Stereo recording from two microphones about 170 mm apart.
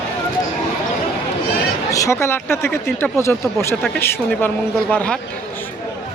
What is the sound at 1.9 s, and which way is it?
Speech, 15° left (ahead or behind).